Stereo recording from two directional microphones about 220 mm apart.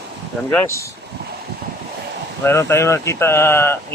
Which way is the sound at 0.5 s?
15° left (ahead or behind).